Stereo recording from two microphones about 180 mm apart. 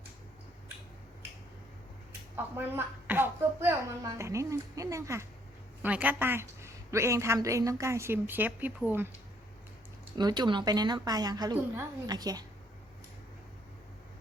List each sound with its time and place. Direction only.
2.3 s a woman's voice: 10° right (ahead or behind)
10.2 s a woman's voice: 25° right (ahead or behind)